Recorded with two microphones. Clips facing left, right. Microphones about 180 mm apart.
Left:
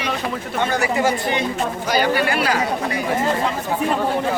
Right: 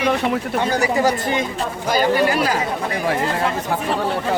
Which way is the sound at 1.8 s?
40° right (ahead or behind).